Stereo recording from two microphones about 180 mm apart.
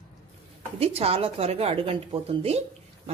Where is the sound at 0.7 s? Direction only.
35° right (ahead or behind).